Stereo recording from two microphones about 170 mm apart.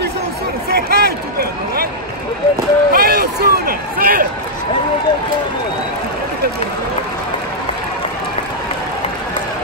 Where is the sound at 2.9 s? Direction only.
65° right (ahead or behind).